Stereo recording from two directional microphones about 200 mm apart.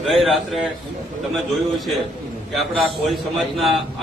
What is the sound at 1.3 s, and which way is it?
A man's voice, centre (ahead or behind).